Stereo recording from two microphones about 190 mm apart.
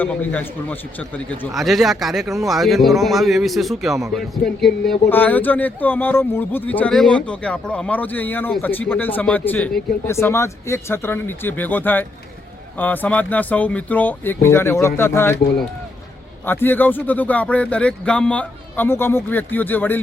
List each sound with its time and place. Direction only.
0.0 s a man's voice: 10° left (ahead or behind)
2.2 s speech: 15° right (ahead or behind)
2.5 s a man's voice: centre (ahead or behind)
16.5 s a man's voice: 10° left (ahead or behind)